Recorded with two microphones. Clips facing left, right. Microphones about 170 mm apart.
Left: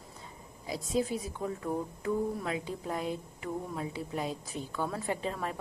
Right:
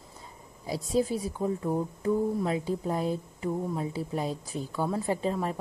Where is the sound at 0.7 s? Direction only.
35° right (ahead or behind).